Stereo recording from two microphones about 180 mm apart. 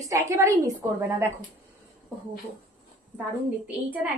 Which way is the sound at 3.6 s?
10° right (ahead or behind).